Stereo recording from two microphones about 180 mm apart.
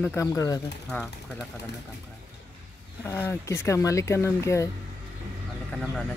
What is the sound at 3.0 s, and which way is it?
Speech, 15° left (ahead or behind).